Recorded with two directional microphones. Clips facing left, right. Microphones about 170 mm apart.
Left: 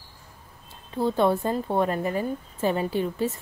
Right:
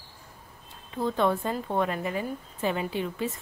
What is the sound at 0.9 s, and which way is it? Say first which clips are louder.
A woman's voice: left 3 dB; 35° left (ahead or behind).